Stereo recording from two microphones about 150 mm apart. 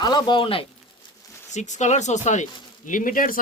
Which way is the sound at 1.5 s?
50° left (ahead or behind).